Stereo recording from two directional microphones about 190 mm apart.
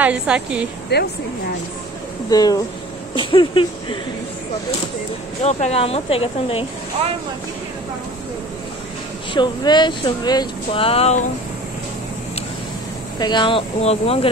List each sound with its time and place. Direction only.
0.0 s a woman's voice: 5° right (ahead or behind)
0.9 s speech: 60° left (ahead or behind)
2.2 s speech: 20° left (ahead or behind)
5.4 s speech: 35° left (ahead or behind)
9.3 s speech: 25° left (ahead or behind)
13.2 s speech: 25° left (ahead or behind)